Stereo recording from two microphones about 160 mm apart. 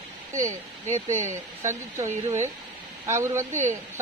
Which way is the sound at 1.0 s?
50° right (ahead or behind).